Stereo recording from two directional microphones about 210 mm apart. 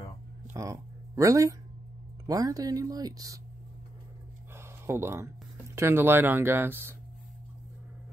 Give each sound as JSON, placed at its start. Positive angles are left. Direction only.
{"t": 0.5, "sound": "speech", "side_deg": -15}
{"t": 4.6, "sound": "a sound", "side_deg": -10}
{"t": 5.8, "sound": "speech", "side_deg": -10}